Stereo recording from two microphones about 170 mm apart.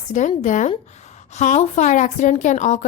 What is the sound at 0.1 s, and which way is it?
A woman's voice, 45° left (ahead or behind).